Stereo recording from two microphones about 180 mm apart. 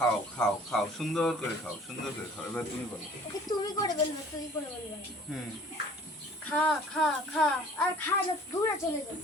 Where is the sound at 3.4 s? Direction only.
20° left (ahead or behind).